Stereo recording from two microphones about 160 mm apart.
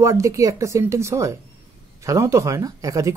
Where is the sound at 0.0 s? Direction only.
20° right (ahead or behind).